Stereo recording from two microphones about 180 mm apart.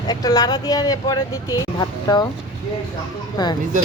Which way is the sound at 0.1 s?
20° left (ahead or behind).